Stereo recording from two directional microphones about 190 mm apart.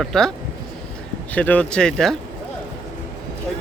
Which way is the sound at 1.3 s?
10° left (ahead or behind).